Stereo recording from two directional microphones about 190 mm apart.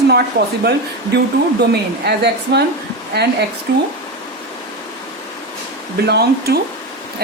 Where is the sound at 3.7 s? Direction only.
60° right (ahead or behind).